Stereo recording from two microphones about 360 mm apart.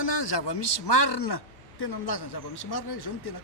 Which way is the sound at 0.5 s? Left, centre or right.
Left.